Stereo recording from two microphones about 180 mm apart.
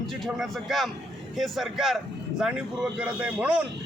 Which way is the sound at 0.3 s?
Centre (ahead or behind).